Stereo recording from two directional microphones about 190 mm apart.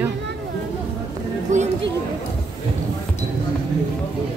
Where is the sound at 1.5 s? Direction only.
40° right (ahead or behind).